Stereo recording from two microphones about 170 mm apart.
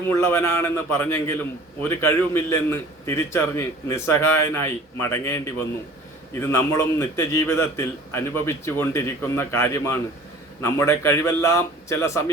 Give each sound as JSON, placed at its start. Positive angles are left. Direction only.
{"t": 0.1, "sound": "a man's voice", "side_deg": 15}